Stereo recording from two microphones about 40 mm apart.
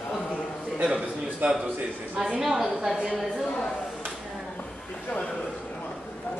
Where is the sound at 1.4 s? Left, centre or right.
Right.